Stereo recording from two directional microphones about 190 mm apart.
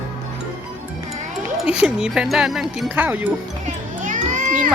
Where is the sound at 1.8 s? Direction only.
5° right (ahead or behind).